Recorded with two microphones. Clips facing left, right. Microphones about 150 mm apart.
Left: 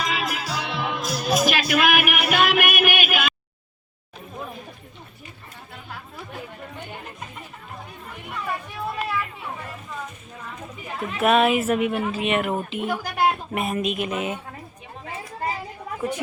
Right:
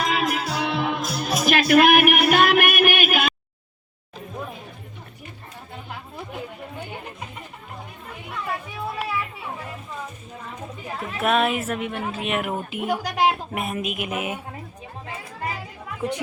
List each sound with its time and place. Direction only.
0.0 s music: 50° right (ahead or behind)
5.9 s chatter: 20° right (ahead or behind)
8.3 s chatter: centre (ahead or behind)
10.9 s a woman's voice: centre (ahead or behind); by 13.2 s 15° right (ahead or behind)
13.5 s a woman's voice: centre (ahead or behind)